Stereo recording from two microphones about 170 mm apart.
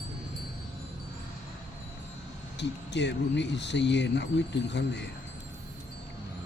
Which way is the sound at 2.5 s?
90° left.